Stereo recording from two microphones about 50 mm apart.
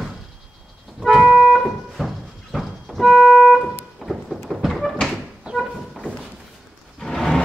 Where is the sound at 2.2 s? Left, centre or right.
Centre.